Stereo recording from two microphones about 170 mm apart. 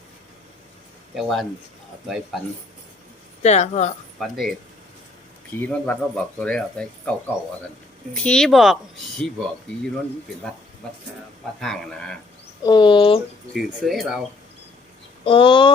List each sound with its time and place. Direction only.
1.1 s speech: centre (ahead or behind)
3.4 s speech: 40° left (ahead or behind)
4.2 s speech: centre (ahead or behind)
5.5 s speech: 10° left (ahead or behind)
8.1 s speech: 5° left (ahead or behind)
11.6 s speech: centre (ahead or behind)
12.6 s speech: 25° left (ahead or behind)
13.5 s speech: centre (ahead or behind)
15.2 s speech: 30° left (ahead or behind)